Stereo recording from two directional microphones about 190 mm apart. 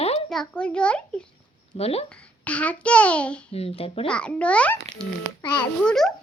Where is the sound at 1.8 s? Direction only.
30° left (ahead or behind).